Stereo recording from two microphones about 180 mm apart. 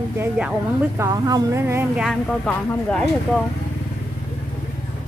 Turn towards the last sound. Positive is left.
turn(degrees=5)  # may be behind; listen again after turning